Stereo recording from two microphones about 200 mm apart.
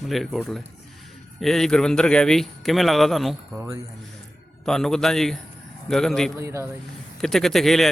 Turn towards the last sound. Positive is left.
turn(degrees=0)  # may be behind; listen again after turning